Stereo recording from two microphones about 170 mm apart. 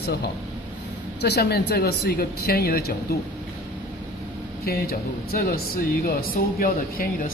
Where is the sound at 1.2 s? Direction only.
75° left (ahead or behind).